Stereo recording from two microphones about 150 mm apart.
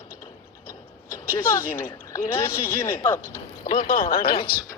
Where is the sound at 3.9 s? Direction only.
70° left (ahead or behind).